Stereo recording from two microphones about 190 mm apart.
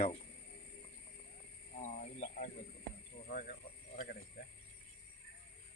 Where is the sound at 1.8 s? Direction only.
40° left (ahead or behind).